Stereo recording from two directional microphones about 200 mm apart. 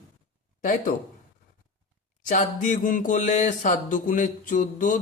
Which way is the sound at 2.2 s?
40° left (ahead or behind).